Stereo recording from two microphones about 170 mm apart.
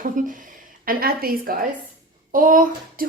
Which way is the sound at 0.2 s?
50° right (ahead or behind).